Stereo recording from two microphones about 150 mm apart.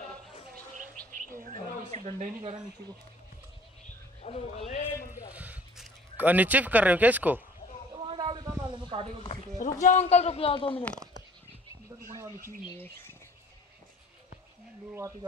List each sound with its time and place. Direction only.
2.0 s speech: 50° right (ahead or behind)
4.2 s a man's voice: 45° left (ahead or behind)
5.3 s speech: 10° right (ahead or behind)
8.0 s a sound: 30° right (ahead or behind)
9.6 s a man's voice: 55° left (ahead or behind); by 10.9 s 35° left (ahead or behind)
12.0 s speech: 20° right (ahead or behind)
12.7 s speech: 15° left (ahead or behind)